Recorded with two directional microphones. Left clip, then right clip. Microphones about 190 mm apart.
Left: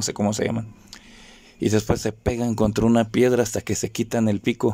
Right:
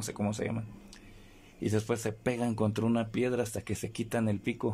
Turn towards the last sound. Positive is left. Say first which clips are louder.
# left 11 dB
turn(degrees=25)  # may be behind; listen again after turning